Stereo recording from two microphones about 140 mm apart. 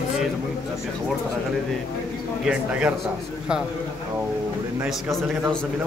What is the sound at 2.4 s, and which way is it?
Speech, 5° right (ahead or behind).